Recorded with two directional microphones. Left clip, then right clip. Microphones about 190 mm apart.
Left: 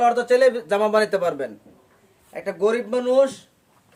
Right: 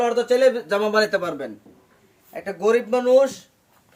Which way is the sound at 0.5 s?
50° left (ahead or behind).